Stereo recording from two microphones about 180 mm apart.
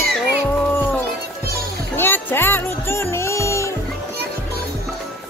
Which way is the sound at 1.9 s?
10° left (ahead or behind).